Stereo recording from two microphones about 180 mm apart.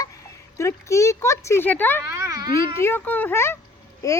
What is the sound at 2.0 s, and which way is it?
Speech, 15° right (ahead or behind).